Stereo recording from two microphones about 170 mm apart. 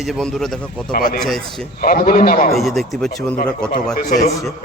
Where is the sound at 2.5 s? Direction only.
Centre (ahead or behind).